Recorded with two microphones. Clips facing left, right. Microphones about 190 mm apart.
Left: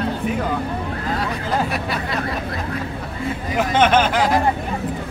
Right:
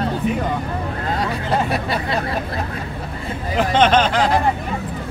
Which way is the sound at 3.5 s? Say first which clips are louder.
Right 1 dB; 10° left (ahead or behind).